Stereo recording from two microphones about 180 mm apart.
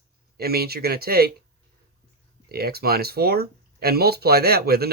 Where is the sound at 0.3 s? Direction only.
60° right (ahead or behind).